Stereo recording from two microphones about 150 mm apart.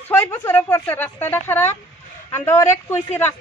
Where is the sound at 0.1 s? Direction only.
15° left (ahead or behind).